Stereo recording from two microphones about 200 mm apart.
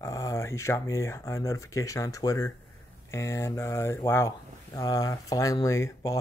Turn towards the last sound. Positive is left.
turn(degrees=15)  # may be behind; listen again after turning